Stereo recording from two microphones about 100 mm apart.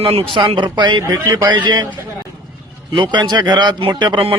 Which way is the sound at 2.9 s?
50° right (ahead or behind).